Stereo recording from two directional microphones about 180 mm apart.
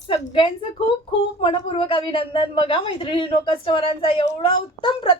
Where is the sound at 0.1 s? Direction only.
30° left (ahead or behind).